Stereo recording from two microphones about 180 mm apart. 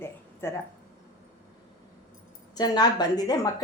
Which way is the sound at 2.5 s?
20° left (ahead or behind).